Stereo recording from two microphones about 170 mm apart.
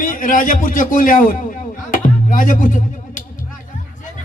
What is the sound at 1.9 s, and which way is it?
Music, 50° left (ahead or behind).